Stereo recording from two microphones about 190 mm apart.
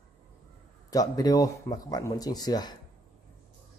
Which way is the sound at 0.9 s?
20° left (ahead or behind).